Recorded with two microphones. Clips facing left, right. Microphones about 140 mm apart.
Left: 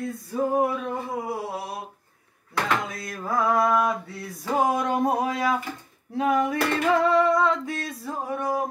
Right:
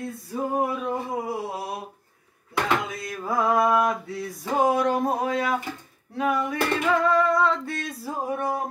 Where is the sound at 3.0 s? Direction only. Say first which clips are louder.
Even; 10° right (ahead or behind).